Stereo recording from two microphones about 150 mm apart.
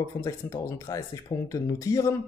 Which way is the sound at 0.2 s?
25° left (ahead or behind).